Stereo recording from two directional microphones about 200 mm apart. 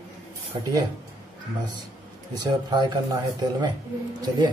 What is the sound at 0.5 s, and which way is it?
Speech, 25° right (ahead or behind).